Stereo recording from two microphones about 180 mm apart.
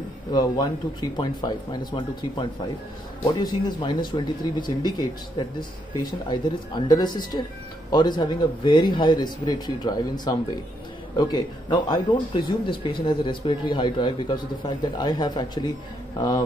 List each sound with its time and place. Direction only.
0.3 s speech: 20° left (ahead or behind)